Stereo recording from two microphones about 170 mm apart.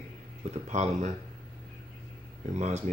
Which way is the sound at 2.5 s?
40° right (ahead or behind).